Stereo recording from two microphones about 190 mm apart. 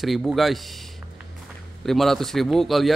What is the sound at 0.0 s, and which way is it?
Speech, centre (ahead or behind).